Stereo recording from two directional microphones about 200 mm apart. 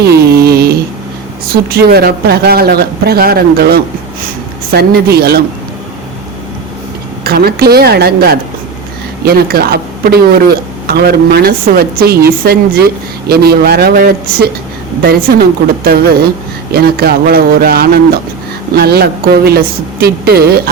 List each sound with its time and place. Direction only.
0.0 s music: 50° right (ahead or behind)
1.7 s a woman's voice: 50° right (ahead or behind)
7.3 s a woman's voice: 50° right (ahead or behind)